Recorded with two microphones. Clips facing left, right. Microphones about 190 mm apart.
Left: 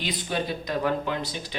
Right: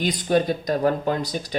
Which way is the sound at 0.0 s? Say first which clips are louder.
Right 8 dB; 45° right (ahead or behind).